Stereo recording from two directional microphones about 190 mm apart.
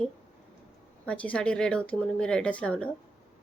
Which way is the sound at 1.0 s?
5° left (ahead or behind).